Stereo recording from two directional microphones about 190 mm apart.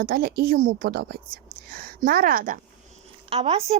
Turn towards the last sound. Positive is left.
turn(degrees=-30)  # may be behind; listen again after turning